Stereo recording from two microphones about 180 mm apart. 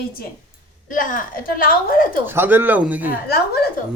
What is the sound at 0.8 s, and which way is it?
A woman's voice, 50° left (ahead or behind).